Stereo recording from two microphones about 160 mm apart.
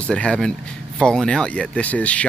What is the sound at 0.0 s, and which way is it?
Speech, 5° left (ahead or behind).